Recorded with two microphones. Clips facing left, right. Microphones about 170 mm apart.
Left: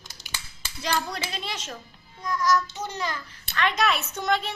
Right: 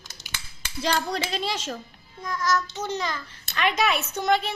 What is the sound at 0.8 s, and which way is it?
Speech, 35° right (ahead or behind).